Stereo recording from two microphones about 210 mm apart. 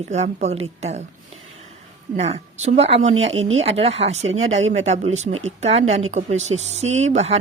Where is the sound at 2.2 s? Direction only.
30° right (ahead or behind).